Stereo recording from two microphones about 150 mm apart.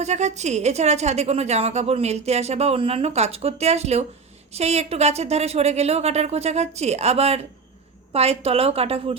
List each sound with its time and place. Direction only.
0.0 s a woman's voice: 50° right (ahead or behind)